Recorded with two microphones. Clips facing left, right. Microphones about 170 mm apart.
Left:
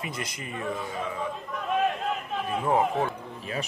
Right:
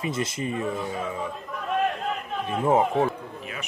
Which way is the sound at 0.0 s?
25° right (ahead or behind).